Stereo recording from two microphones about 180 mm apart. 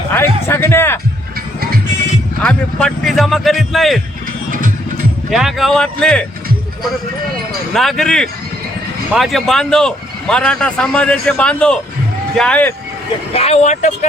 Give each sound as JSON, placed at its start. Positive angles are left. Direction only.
{"t": 0.1, "sound": "a man's voice", "side_deg": 10}
{"t": 2.4, "sound": "a man's voice", "side_deg": 5}
{"t": 5.3, "sound": "a man's voice", "side_deg": 0}
{"t": 7.7, "sound": "a man's voice", "side_deg": 0}
{"t": 13.3, "sound": "speech", "side_deg": 35}